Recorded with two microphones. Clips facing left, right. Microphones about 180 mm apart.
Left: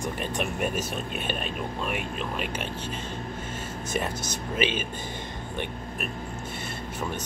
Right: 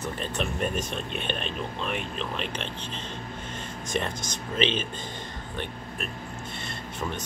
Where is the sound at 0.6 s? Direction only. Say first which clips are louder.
Left 1 dB; 5° left (ahead or behind).